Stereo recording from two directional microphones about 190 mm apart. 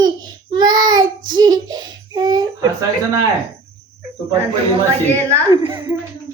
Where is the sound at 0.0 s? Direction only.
20° right (ahead or behind).